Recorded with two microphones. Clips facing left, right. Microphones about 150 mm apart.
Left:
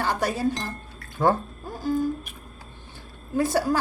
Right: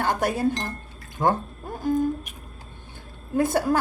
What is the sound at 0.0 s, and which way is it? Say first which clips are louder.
Speech: right 2 dB; 55° right (ahead or behind).